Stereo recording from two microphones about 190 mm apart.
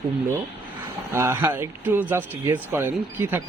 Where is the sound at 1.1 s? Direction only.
10° right (ahead or behind).